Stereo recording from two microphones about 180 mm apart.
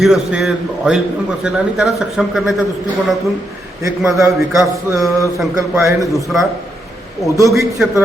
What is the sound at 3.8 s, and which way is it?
Speech, 15° right (ahead or behind).